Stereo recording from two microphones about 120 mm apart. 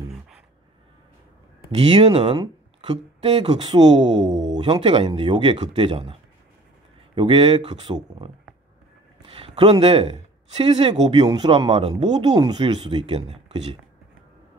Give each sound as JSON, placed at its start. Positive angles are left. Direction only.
{"t": 1.7, "sound": "speech", "side_deg": -55}
{"t": 7.2, "sound": "speech", "side_deg": -45}
{"t": 9.2, "sound": "speech", "side_deg": -50}